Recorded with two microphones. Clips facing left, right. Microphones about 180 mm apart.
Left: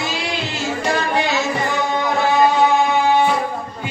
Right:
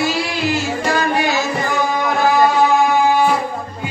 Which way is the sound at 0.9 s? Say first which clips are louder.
Right 2 dB; 25° left (ahead or behind).